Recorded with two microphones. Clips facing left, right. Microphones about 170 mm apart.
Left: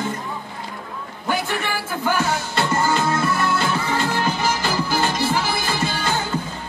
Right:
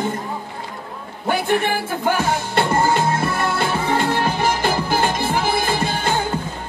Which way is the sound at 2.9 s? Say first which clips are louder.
Right 1 dB; 55° right (ahead or behind).